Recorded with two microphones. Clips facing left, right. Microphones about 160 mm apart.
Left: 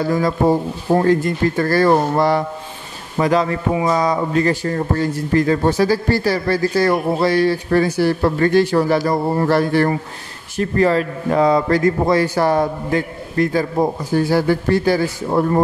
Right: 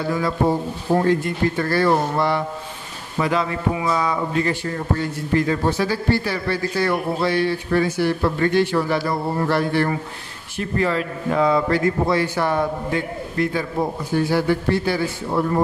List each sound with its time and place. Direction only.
0.0 s a man's voice: 40° left (ahead or behind)